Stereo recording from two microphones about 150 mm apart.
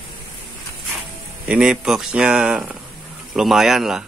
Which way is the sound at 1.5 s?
5° right (ahead or behind).